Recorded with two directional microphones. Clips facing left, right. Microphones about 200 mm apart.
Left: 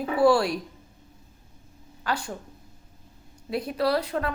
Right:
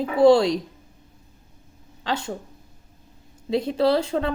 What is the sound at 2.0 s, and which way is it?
Speech, 25° right (ahead or behind).